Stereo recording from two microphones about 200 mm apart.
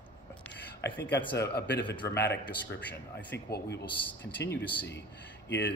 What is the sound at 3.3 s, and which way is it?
Speech, 55° left (ahead or behind).